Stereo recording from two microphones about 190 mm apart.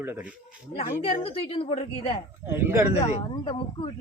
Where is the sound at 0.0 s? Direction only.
10° right (ahead or behind).